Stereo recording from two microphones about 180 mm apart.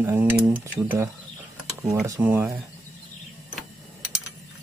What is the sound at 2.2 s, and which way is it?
Speech, 10° right (ahead or behind).